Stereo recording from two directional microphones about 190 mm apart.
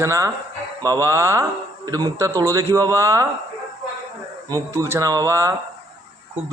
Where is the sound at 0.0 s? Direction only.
15° right (ahead or behind).